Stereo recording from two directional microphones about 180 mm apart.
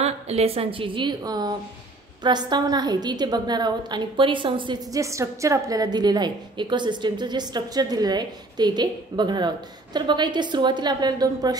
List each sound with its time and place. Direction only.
0.0 s a woman's voice: 35° right (ahead or behind)